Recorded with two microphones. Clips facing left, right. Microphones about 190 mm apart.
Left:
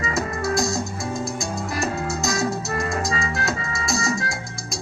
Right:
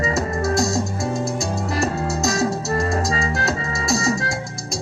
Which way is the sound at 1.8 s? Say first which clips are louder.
Right 3 dB; 40° right (ahead or behind).